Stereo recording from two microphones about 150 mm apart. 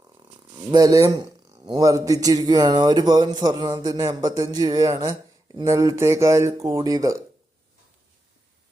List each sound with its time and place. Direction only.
0.7 s a man's voice: 25° right (ahead or behind)